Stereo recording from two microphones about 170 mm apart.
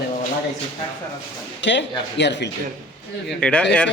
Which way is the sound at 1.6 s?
90° left.